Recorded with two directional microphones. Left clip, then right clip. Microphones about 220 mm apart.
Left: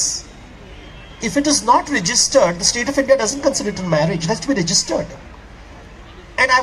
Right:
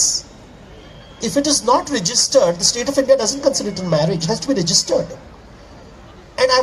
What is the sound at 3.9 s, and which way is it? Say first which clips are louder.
Speech: even; 60° right (ahead or behind).